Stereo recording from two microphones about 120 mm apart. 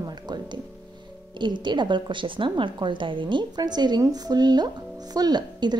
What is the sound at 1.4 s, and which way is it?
Speech, 40° right (ahead or behind).